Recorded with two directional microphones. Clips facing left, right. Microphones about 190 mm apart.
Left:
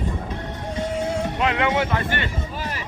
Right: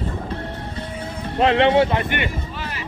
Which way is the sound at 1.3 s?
30° right (ahead or behind).